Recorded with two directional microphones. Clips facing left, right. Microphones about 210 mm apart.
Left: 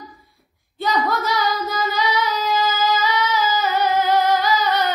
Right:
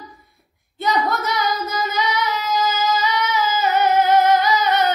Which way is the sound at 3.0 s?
20° right (ahead or behind).